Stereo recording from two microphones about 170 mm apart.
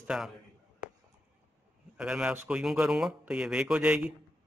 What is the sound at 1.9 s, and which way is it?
A man's voice, 5° right (ahead or behind).